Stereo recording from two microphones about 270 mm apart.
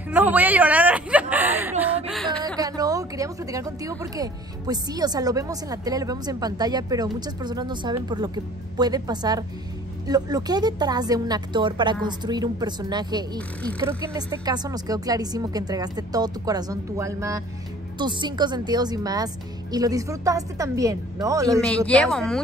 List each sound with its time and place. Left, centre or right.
0.1 s speech: centre
2.4 s speech: centre
21.6 s speech: centre